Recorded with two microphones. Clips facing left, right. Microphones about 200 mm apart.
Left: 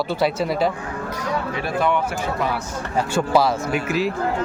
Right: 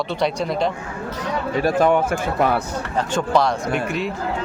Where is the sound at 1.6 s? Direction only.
40° right (ahead or behind).